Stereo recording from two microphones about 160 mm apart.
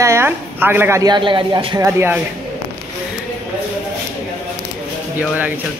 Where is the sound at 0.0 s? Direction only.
15° right (ahead or behind).